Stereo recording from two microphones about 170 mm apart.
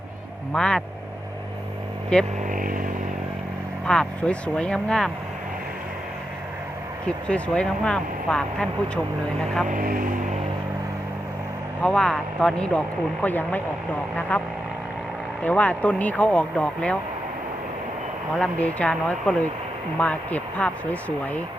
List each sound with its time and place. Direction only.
0.5 s speech: 5° left (ahead or behind)
2.1 s speech: 5° left (ahead or behind)
2.5 s vehicle: 55° right (ahead or behind)
3.8 s speech: 5° left (ahead or behind)
7.3 s speech: 5° left (ahead or behind)
9.6 s speech: 55° right (ahead or behind)
11.8 s speech: 5° left (ahead or behind)
15.4 s speech: 10° left (ahead or behind)
18.3 s speech: 5° left (ahead or behind)